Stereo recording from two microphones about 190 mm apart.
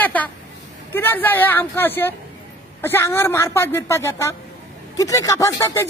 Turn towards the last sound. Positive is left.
turn(degrees=15)  # may be behind; listen again after turning